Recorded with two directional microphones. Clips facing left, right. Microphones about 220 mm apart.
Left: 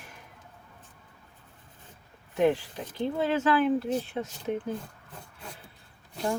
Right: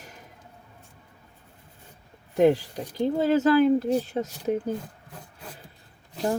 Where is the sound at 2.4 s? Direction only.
40° right (ahead or behind).